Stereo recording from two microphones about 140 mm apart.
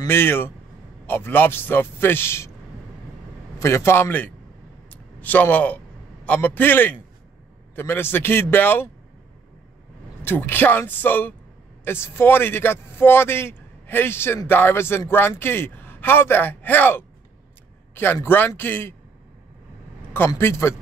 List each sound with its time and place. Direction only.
0.0 s a man's voice: 15° left (ahead or behind)
3.5 s a man's voice: 20° left (ahead or behind)
4.9 s a sound: 10° left (ahead or behind)
6.2 s a man's voice: 10° left (ahead or behind)
10.2 s a man's voice: 15° left (ahead or behind)
20.1 s a man's voice: 15° left (ahead or behind)